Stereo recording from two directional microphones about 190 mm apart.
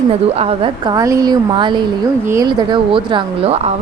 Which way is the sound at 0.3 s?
30° right (ahead or behind).